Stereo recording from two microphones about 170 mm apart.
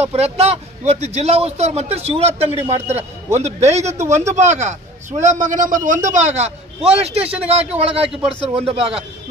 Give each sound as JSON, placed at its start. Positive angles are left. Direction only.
{"t": 0.0, "sound": "a man's voice", "side_deg": -35}